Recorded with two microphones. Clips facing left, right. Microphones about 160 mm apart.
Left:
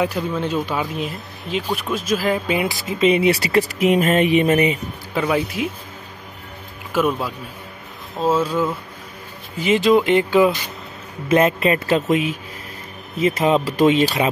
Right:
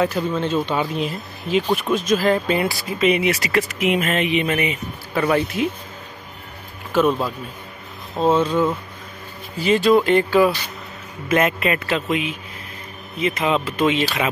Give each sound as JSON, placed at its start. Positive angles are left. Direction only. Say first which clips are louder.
{"t": 0.0, "sound": "speech", "louder": "right 1 dB", "side_deg": 10}
{"t": 0.7, "sound": "speech", "louder": "right 2 dB", "side_deg": 0}
{"t": 5.1, "sound": "speech", "louder": "right 1 dB", "side_deg": 10}
{"t": 6.9, "sound": "speech", "louder": "right 2 dB", "side_deg": 10}
{"t": 9.6, "sound": "speech", "louder": "even", "side_deg": 20}
{"t": 11.2, "sound": "speech", "louder": "left 3 dB", "side_deg": 30}